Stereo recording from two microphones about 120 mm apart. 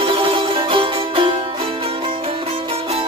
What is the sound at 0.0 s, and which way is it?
Music, 45° right (ahead or behind).